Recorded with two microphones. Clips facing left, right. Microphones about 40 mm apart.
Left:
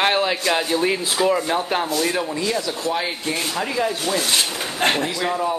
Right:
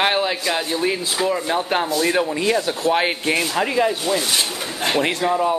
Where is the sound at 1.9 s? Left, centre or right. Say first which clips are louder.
Right 3 dB; right.